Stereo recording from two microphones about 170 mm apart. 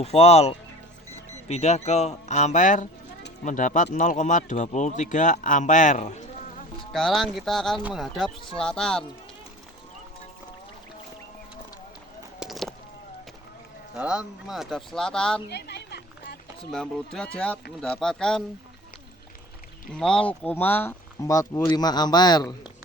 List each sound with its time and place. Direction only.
0.0 s speech: 35° left (ahead or behind)
6.9 s speech: centre (ahead or behind)
12.4 s a sound: centre (ahead or behind)
13.9 s speech: 5° right (ahead or behind)
15.4 s a sound: 75° left (ahead or behind)
16.7 s speech: 5° left (ahead or behind)
19.9 s a man's voice: 5° left (ahead or behind); by 22.5 s 25° left (ahead or behind)